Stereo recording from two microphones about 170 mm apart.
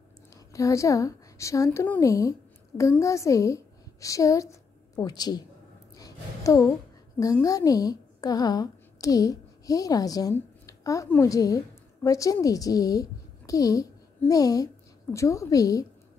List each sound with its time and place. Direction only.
0.3 s a woman's voice: 20° left (ahead or behind)
5.9 s a sound: 20° left (ahead or behind)
7.3 s a woman's voice: 20° left (ahead or behind)